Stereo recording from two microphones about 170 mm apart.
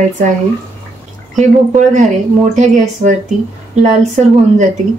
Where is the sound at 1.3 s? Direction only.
45° right (ahead or behind).